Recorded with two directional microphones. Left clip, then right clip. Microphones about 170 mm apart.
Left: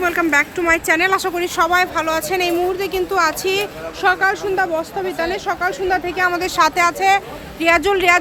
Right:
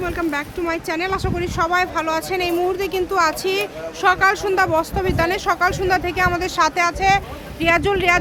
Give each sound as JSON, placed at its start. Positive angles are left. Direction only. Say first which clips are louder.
{"t": 0.0, "sound": "speech", "louder": "left 7 dB", "side_deg": 15}
{"t": 2.7, "sound": "speech", "louder": "left 1 dB", "side_deg": -5}
{"t": 4.0, "sound": "speech", "louder": "even", "side_deg": -15}
{"t": 4.4, "sound": "speech", "louder": "right 1 dB", "side_deg": -30}
{"t": 6.1, "sound": "speech", "louder": "left 2 dB", "side_deg": -5}